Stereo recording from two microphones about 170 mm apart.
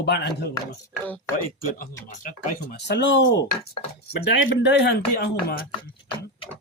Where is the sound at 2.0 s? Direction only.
50° left (ahead or behind).